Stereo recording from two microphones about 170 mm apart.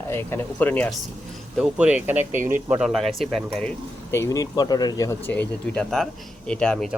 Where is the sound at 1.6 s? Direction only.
5° right (ahead or behind).